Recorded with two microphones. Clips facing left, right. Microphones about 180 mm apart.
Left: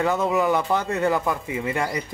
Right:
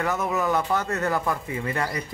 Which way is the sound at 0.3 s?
20° left (ahead or behind).